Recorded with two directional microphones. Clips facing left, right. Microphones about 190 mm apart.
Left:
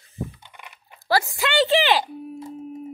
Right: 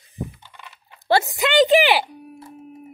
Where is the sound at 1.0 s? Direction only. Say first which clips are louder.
Right 3 dB; 20° right (ahead or behind).